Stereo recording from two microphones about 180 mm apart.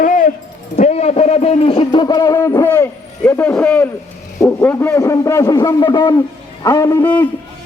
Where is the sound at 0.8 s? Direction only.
40° left (ahead or behind).